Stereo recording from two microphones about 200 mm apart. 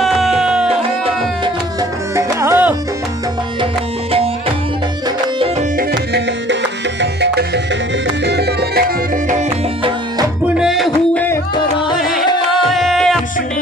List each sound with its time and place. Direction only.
0.0 s music: centre (ahead or behind)
1.0 s music: 20° right (ahead or behind)
5.8 s music: 60° right (ahead or behind)
10.5 s music: centre (ahead or behind)
12.7 s music: centre (ahead or behind)